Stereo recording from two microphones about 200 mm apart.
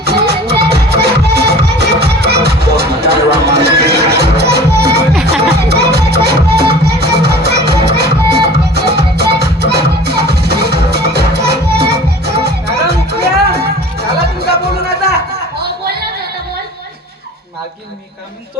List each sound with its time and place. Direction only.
0.0 s music: 55° right (ahead or behind)